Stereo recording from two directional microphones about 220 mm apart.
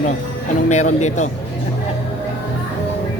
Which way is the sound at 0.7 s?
30° left (ahead or behind).